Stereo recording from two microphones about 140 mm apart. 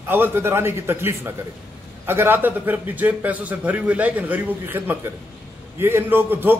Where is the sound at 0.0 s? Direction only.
15° right (ahead or behind).